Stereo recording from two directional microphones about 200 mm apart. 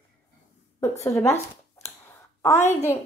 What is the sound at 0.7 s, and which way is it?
Speech, 15° left (ahead or behind).